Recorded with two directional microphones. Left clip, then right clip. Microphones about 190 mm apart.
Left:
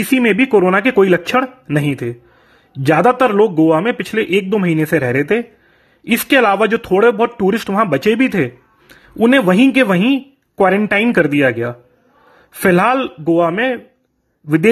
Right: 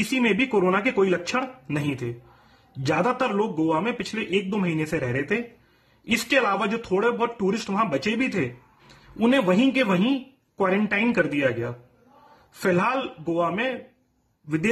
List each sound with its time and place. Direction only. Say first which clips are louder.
0.2 s a man's voice: left 9 dB; 30° left (ahead or behind)